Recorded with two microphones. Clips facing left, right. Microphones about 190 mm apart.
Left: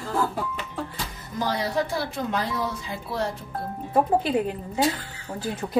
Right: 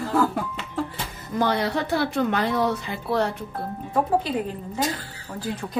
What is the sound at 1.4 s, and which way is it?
A woman's voice, 65° right (ahead or behind).